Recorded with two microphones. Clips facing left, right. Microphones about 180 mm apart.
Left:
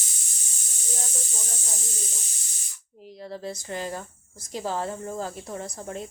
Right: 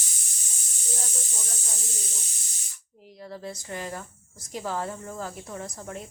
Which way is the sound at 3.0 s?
30° left (ahead or behind).